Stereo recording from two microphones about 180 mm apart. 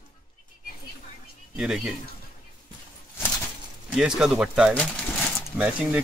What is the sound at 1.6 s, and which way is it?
Speech, 5° right (ahead or behind).